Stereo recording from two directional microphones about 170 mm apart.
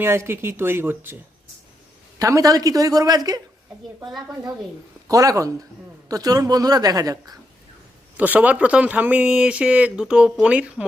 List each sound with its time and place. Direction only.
0.0 s speech: 15° right (ahead or behind)
2.1 s speech: 20° right (ahead or behind)
5.0 s speech: 20° right (ahead or behind)
8.1 s speech: 10° right (ahead or behind)